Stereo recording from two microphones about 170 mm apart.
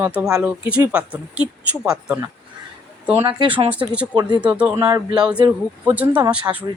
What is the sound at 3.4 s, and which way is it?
Speech, 30° right (ahead or behind).